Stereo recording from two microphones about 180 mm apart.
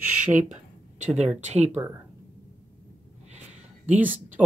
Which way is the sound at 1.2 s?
40° right (ahead or behind).